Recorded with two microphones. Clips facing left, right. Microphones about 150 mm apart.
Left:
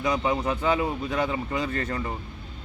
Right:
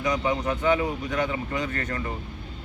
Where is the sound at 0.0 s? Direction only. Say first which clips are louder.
Even; 30° left (ahead or behind).